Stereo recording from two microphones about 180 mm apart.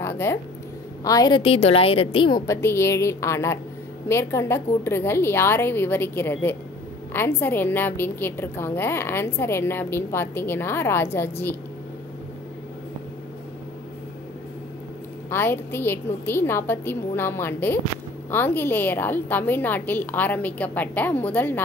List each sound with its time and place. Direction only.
0.0 s a sound: 15° left (ahead or behind)
1.0 s a woman's voice: 20° left (ahead or behind)
15.2 s a woman's voice: 15° left (ahead or behind)